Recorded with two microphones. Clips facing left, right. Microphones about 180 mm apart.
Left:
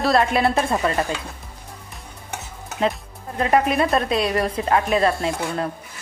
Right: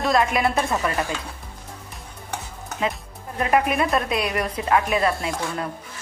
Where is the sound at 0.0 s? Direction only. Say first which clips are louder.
Left 2 dB; 35° left (ahead or behind).